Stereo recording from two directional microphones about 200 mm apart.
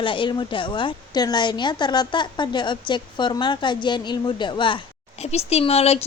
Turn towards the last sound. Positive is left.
turn(degrees=30)  # may be behind; listen again after turning